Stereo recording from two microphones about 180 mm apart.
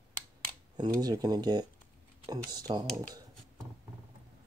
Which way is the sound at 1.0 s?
20° right (ahead or behind).